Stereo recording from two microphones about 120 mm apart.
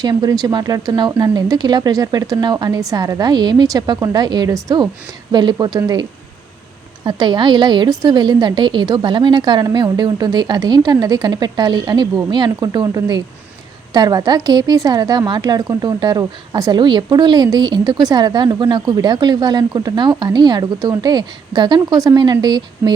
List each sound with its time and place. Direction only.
0.0 s a woman's voice: 35° right (ahead or behind)